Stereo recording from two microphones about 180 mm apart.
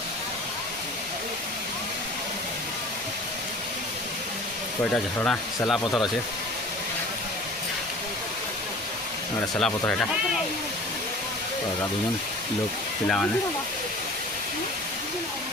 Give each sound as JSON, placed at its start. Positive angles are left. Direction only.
{"t": 5.6, "sound": "speech", "side_deg": 0}
{"t": 9.6, "sound": "speech", "side_deg": 5}